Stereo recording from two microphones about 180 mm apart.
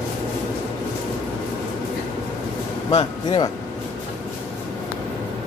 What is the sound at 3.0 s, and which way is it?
Speech, 20° left (ahead or behind).